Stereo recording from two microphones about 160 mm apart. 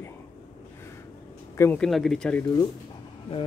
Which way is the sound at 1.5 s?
15° left (ahead or behind).